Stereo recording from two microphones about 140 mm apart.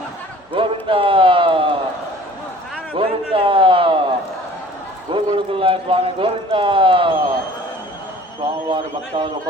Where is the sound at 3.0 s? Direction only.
40° right (ahead or behind).